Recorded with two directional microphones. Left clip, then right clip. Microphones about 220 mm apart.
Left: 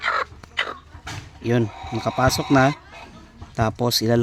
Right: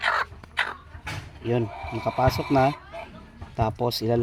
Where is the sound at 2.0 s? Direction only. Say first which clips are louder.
Left 3 dB; 45° left (ahead or behind).